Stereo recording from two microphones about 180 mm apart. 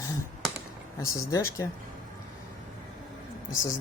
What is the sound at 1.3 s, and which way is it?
Speech, 15° left (ahead or behind).